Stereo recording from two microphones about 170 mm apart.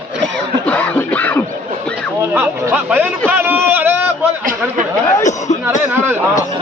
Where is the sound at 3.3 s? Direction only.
10° right (ahead or behind).